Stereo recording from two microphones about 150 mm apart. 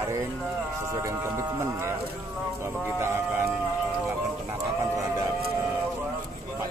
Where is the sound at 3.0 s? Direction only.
15° right (ahead or behind).